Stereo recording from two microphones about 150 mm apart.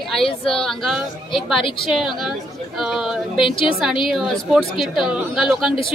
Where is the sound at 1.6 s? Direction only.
35° left (ahead or behind).